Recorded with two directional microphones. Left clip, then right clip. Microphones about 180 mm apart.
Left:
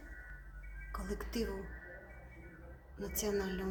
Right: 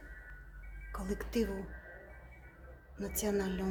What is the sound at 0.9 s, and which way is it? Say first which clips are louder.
Speech: right 3 dB; 35° right (ahead or behind).